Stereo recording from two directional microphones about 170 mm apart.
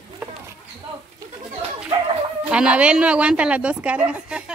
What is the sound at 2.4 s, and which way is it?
A woman's voice, 5° right (ahead or behind).